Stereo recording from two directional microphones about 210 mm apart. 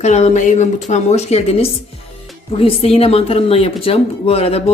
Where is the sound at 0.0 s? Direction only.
35° left (ahead or behind).